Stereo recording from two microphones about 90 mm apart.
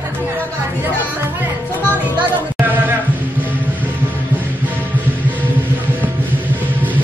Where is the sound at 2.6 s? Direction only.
20° right (ahead or behind).